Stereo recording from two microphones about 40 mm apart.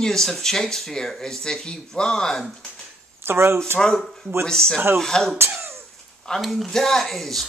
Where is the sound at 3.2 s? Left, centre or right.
Right.